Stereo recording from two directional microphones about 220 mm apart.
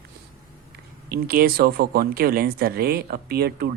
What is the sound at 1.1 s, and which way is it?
Speech, 45° right (ahead or behind).